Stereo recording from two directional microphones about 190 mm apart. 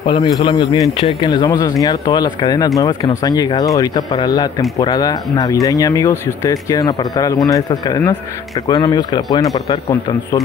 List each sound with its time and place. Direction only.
0.0 s speech: 25° left (ahead or behind)